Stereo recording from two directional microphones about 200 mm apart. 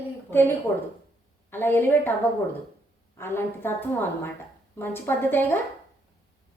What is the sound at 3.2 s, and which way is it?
A woman's voice, 10° left (ahead or behind).